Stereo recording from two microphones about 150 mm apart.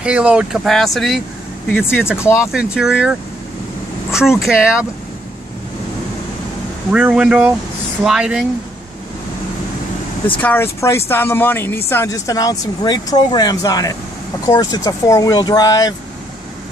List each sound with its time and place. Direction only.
0.0 s speech: 5° right (ahead or behind)
2.1 s speech: 20° left (ahead or behind)
2.5 s speech: 5° right (ahead or behind)
6.9 s speech: 10° right (ahead or behind)
10.3 s speech: 10° left (ahead or behind)